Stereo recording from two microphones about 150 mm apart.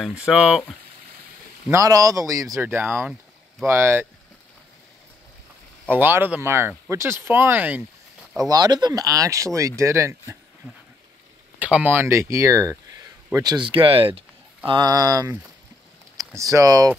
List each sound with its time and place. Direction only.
0.2 s speech: 5° right (ahead or behind)
1.7 s speech: 25° right (ahead or behind)
5.9 s speech: 15° right (ahead or behind)
8.4 s speech: 25° right (ahead or behind)
11.6 s speech: 10° right (ahead or behind)
16.3 s speech: 20° right (ahead or behind)